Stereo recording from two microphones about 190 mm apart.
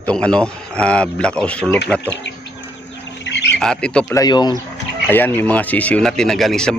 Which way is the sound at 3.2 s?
65° left (ahead or behind).